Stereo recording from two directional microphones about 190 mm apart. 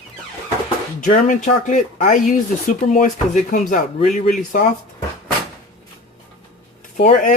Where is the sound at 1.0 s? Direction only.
40° left (ahead or behind).